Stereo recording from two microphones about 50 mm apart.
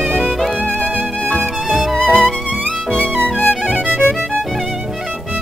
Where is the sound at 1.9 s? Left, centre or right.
Left.